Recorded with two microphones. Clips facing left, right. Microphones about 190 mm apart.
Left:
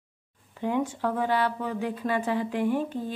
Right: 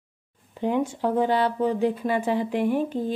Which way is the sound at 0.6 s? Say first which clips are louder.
Right 3 dB; 20° right (ahead or behind).